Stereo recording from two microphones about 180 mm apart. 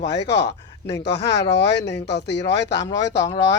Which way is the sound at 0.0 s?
70° left (ahead or behind).